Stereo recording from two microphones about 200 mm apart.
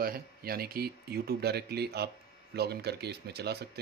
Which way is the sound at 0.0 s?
50° right (ahead or behind).